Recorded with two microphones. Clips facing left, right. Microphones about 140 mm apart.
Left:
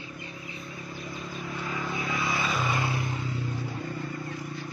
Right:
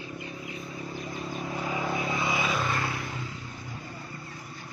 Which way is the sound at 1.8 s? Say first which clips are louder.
Right 1 dB; 30° right (ahead or behind).